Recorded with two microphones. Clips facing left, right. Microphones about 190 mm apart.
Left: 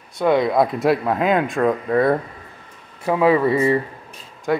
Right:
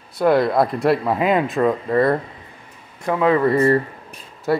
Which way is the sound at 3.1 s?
10° left (ahead or behind).